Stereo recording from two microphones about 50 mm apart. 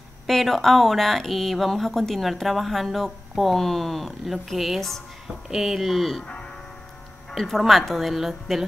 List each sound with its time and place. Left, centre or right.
0.3 s speech: centre
5.5 s speech: centre
6.2 s music: centre
7.3 s speech: centre